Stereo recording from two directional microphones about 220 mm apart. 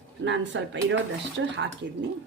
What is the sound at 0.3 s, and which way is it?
Speech, 55° right (ahead or behind).